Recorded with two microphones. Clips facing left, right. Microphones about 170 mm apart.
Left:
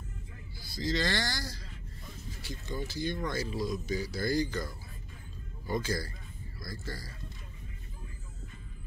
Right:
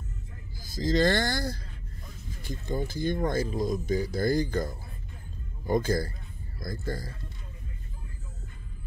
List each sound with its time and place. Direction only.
0.6 s speech: 45° right (ahead or behind)